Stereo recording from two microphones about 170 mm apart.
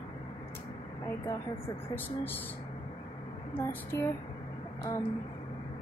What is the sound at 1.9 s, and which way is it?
Speech, 10° left (ahead or behind).